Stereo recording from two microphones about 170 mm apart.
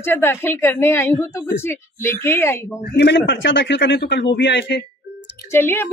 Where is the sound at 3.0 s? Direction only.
85° left.